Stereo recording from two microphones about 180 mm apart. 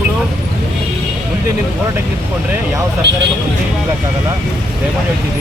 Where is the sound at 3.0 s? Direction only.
70° right (ahead or behind).